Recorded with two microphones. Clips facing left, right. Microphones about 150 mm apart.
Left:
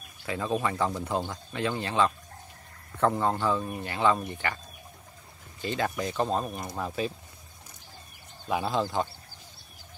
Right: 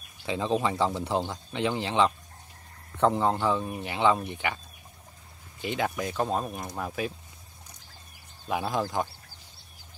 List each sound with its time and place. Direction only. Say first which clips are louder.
0.2 s speech: right 2 dB; 20° right (ahead or behind)
5.6 s speech: even; 15° right (ahead or behind)
8.5 s speech: left 1 dB; 10° right (ahead or behind)